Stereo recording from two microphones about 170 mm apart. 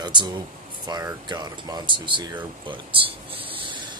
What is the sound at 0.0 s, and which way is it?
Speech, 25° right (ahead or behind).